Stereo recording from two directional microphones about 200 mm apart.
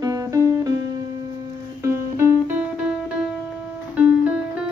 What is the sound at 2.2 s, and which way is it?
Guitar, 10° right (ahead or behind).